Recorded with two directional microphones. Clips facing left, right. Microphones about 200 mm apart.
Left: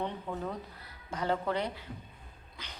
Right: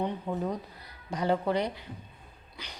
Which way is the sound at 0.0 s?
15° right (ahead or behind).